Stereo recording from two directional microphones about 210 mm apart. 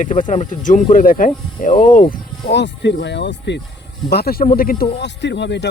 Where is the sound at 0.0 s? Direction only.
35° left (ahead or behind).